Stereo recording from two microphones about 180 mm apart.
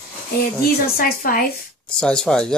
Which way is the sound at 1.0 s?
50° left (ahead or behind).